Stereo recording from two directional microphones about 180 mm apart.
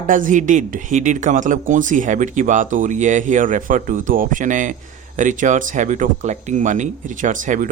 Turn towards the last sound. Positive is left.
turn(degrees=-45)  # may be behind; listen again after turning